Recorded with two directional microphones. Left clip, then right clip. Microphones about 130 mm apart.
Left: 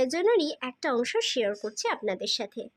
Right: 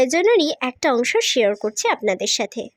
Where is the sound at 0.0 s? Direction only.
40° right (ahead or behind).